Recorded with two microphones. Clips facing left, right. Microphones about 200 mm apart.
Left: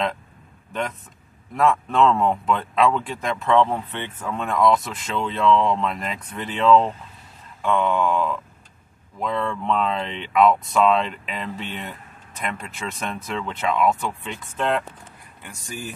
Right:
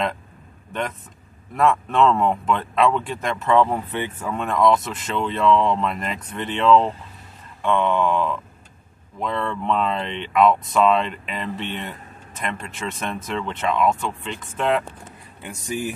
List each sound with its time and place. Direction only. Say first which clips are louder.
1.5 s speech: right 1 dB; centre (ahead or behind)
14.6 s speech: right 2 dB; 5° right (ahead or behind)
15.4 s speech: right 8 dB; 20° right (ahead or behind)